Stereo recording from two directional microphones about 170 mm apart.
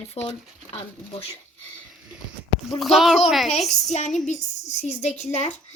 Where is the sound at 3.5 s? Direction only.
40° left (ahead or behind).